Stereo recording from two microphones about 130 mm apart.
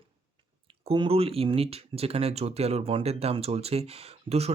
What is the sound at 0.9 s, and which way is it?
Speech, 45° right (ahead or behind).